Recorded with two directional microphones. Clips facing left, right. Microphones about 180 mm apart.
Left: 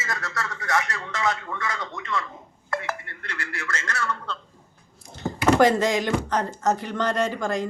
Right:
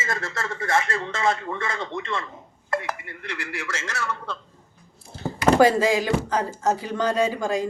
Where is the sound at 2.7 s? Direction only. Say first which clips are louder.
Right 2 dB; 15° right (ahead or behind).